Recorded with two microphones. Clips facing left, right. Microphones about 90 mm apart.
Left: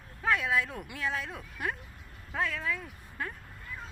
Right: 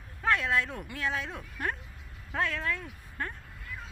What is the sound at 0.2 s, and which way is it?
Speech, 5° left (ahead or behind).